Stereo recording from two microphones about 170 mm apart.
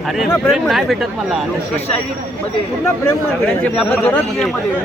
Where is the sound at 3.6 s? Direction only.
10° left (ahead or behind).